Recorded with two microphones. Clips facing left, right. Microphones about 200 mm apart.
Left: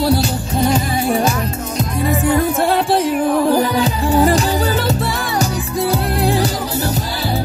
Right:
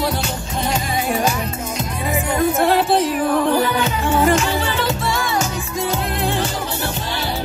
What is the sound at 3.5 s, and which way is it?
Music, 35° left (ahead or behind).